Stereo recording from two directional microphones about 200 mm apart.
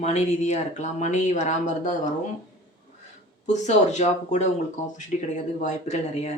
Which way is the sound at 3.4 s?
35° left (ahead or behind).